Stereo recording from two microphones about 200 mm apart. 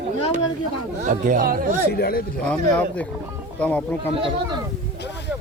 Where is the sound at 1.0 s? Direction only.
40° right (ahead or behind).